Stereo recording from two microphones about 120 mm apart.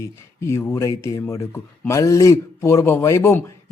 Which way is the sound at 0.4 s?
20° left (ahead or behind).